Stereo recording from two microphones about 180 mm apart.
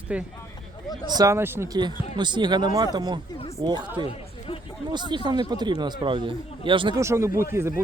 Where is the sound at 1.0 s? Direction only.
20° right (ahead or behind).